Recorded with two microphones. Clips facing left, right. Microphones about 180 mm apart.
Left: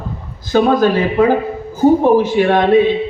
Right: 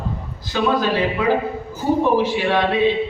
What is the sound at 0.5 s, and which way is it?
A man's voice, 50° left (ahead or behind).